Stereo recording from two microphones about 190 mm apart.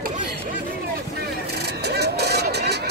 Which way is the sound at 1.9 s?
60° right (ahead or behind).